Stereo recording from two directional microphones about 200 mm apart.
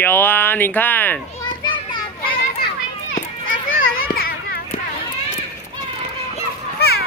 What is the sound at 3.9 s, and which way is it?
Children playing, 50° left (ahead or behind).